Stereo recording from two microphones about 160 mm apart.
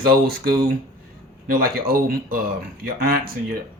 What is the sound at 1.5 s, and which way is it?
Speech, 70° right (ahead or behind).